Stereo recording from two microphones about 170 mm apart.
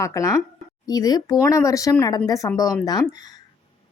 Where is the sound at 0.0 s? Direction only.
20° left (ahead or behind).